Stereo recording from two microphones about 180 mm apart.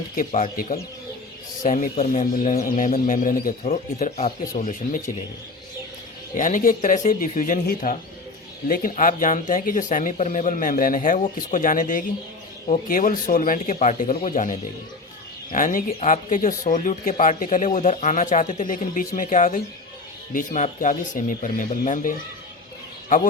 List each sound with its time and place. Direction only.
0.2 s speech: 45° left (ahead or behind)
6.3 s speech: 45° left (ahead or behind)